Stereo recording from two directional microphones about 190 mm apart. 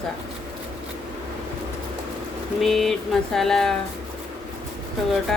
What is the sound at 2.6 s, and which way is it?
Speech, centre (ahead or behind).